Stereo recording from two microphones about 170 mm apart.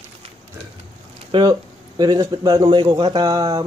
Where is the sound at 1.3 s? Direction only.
25° right (ahead or behind).